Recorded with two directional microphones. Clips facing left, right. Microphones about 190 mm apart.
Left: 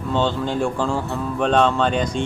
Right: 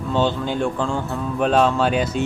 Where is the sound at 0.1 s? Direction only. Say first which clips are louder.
Even; 5° right (ahead or behind).